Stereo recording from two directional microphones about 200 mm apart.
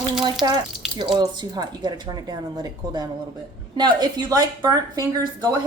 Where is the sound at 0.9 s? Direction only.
20° right (ahead or behind).